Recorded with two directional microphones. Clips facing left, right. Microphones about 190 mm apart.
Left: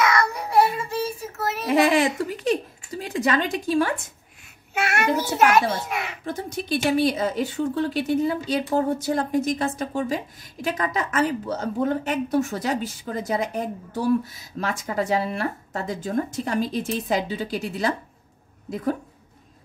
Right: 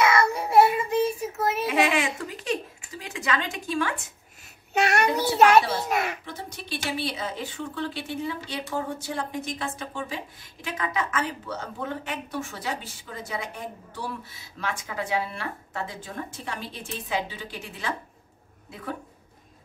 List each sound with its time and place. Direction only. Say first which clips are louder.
0.0 s child singing: even; 25° right (ahead or behind)
1.7 s a woman's voice: left 9 dB; 35° left (ahead or behind)
3.0 s a sound: left 6 dB; 35° left (ahead or behind)
3.3 s a woman's voice: left 6 dB; 40° left (ahead or behind)
5.4 s a child's voice: right 2 dB; 30° right (ahead or behind)
6.2 s a woman's voice: left 9 dB; 45° left (ahead or behind)